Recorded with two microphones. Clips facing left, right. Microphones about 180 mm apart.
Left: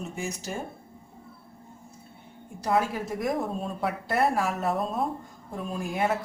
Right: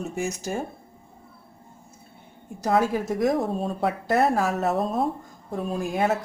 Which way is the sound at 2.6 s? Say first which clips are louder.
Right 4 dB; 40° right (ahead or behind).